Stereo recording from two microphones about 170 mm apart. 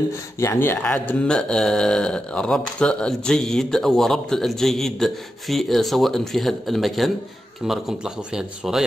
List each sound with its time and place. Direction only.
0.4 s speech: 15° left (ahead or behind); by 8.8 s 5° right (ahead or behind)